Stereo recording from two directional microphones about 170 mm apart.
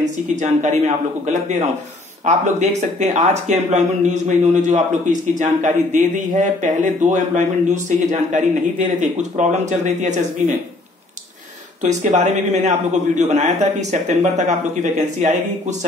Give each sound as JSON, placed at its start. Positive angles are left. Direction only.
{"t": 0.0, "sound": "speech", "side_deg": -45}
{"t": 11.8, "sound": "speech", "side_deg": -45}